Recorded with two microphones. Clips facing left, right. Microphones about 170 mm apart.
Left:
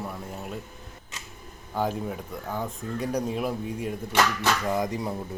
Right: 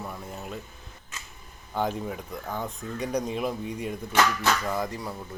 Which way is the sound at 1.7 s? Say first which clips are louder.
Left 1 dB; 5° left (ahead or behind).